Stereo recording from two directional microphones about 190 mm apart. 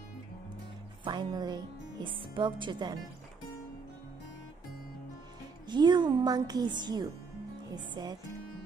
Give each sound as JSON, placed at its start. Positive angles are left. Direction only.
{"t": 1.0, "sound": "speech", "side_deg": -20}
{"t": 5.7, "sound": "speech", "side_deg": -25}